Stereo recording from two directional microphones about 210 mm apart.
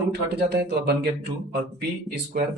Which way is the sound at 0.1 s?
50° right (ahead or behind).